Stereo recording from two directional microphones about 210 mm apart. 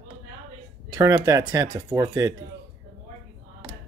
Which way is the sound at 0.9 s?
15° right (ahead or behind).